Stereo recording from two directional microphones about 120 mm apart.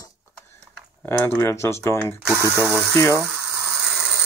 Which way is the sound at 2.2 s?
25° right (ahead or behind).